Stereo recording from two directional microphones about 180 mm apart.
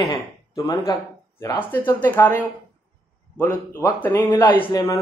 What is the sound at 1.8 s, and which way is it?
Speech, 10° left (ahead or behind).